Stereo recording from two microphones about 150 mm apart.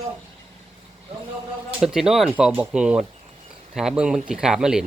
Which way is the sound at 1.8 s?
5° right (ahead or behind).